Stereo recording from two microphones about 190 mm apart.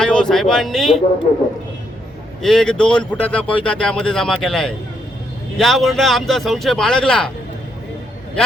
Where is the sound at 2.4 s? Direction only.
Centre (ahead or behind).